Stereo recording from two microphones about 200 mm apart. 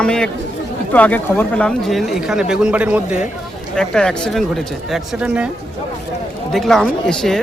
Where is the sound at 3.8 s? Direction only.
5° left (ahead or behind).